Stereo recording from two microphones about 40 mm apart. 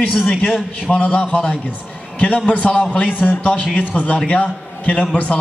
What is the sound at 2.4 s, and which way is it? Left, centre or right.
A man's voice, left.